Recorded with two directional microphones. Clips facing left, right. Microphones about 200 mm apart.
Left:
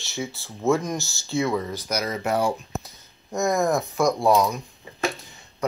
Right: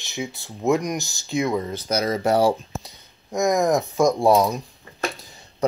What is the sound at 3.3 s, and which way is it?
Speech, 15° right (ahead or behind).